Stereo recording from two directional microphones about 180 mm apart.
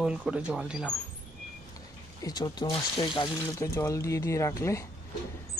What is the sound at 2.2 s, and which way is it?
Speech, 20° left (ahead or behind).